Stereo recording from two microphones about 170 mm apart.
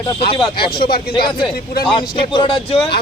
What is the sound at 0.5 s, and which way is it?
Speech, 65° left (ahead or behind).